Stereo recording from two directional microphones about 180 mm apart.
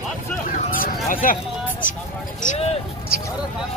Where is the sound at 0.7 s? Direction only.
50° left (ahead or behind).